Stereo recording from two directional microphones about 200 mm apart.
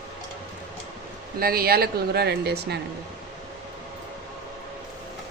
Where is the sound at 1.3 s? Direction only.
50° right (ahead or behind).